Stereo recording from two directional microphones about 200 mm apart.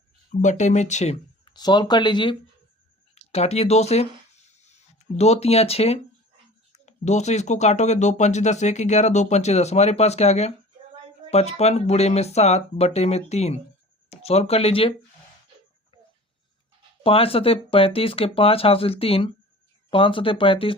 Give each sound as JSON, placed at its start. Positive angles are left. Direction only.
{"t": 0.3, "sound": "speech", "side_deg": 35}
{"t": 1.5, "sound": "speech", "side_deg": 20}
{"t": 17.0, "sound": "speech", "side_deg": 30}